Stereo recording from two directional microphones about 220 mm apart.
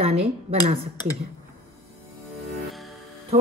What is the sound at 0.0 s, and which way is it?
Speech, 30° right (ahead or behind).